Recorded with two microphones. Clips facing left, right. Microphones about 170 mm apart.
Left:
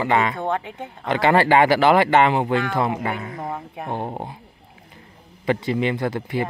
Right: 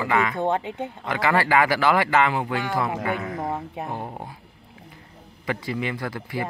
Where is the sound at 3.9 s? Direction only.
30° left (ahead or behind).